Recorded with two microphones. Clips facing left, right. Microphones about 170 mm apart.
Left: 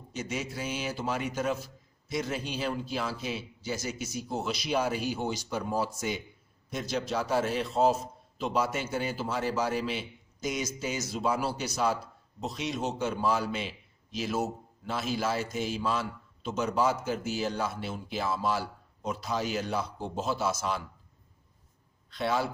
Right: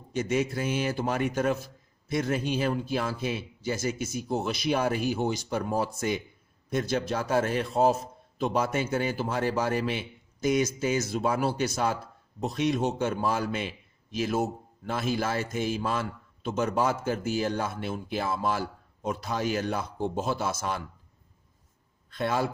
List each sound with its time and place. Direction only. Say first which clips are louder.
0.1 s a man's voice: right 8 dB; 55° right (ahead or behind)
22.1 s a man's voice: right 1 dB; 50° right (ahead or behind)